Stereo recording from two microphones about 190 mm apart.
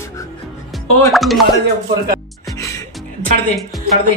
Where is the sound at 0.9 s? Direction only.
Centre (ahead or behind).